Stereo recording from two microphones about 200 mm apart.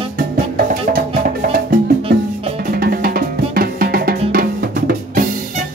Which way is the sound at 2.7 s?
50° right (ahead or behind).